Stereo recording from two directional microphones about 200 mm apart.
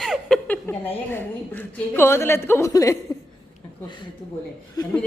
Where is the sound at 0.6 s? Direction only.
10° left (ahead or behind).